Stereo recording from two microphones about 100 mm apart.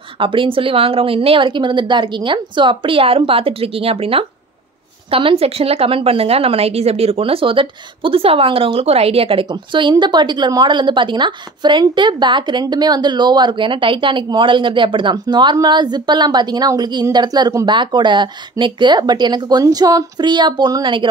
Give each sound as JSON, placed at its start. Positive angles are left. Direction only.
{"t": 0.2, "sound": "a woman's voice", "side_deg": -60}
{"t": 9.5, "sound": "a woman's voice", "side_deg": -50}
{"t": 17.6, "sound": "a woman's voice", "side_deg": -50}